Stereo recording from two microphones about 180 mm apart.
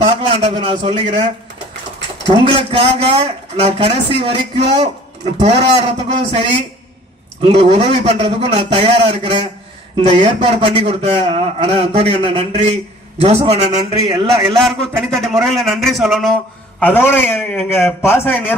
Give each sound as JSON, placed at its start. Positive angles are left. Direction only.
{"t": 0.0, "sound": "a man's voice", "side_deg": -35}
{"t": 7.4, "sound": "speech", "side_deg": -35}
{"t": 14.5, "sound": "speech", "side_deg": 0}
{"t": 16.8, "sound": "a man's voice", "side_deg": 10}